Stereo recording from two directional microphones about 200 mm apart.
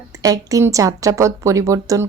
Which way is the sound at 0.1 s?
15° right (ahead or behind).